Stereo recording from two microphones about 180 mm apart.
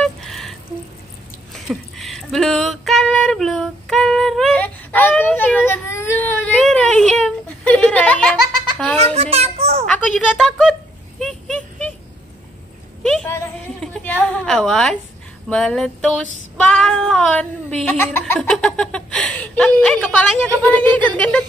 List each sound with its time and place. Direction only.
0.0 s a sound: centre (ahead or behind)
5.7 s whimper: 15° left (ahead or behind)
9.1 s child singing: 35° right (ahead or behind)
9.8 s female singing: 5° left (ahead or behind)
11.1 s a sound: 5° left (ahead or behind)
13.0 s a woman's voice: 5° left (ahead or behind)
15.4 s female singing: 5° left (ahead or behind)
18.2 s speech: 5° left (ahead or behind)
21.0 s a sound: 5° left (ahead or behind)